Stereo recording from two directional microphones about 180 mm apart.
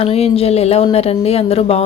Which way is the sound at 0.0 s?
35° left (ahead or behind).